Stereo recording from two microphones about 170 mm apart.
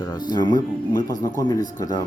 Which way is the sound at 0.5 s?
50° left (ahead or behind).